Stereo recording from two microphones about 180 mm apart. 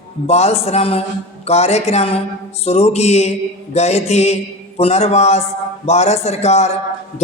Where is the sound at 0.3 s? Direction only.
35° left (ahead or behind).